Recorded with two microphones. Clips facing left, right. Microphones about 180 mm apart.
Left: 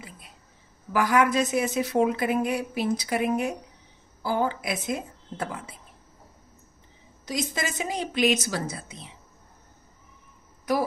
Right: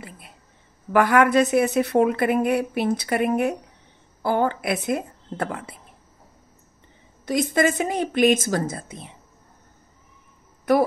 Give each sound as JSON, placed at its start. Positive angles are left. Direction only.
{"t": 0.9, "sound": "a woman's voice", "side_deg": -60}
{"t": 7.2, "sound": "a woman's voice", "side_deg": -55}
{"t": 10.7, "sound": "a woman's voice", "side_deg": -60}